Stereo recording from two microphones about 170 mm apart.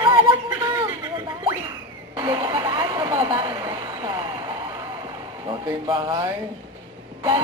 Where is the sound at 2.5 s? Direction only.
20° right (ahead or behind).